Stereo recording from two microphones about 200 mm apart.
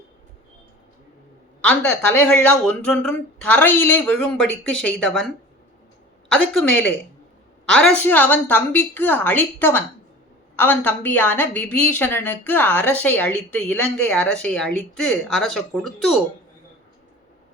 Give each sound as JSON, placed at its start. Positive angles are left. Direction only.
{"t": 1.6, "sound": "a woman's voice", "side_deg": 10}
{"t": 6.3, "sound": "speech", "side_deg": 0}
{"t": 7.7, "sound": "a woman's voice", "side_deg": 5}